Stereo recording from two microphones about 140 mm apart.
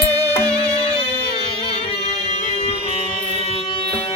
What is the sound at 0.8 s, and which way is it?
Music, 40° left (ahead or behind).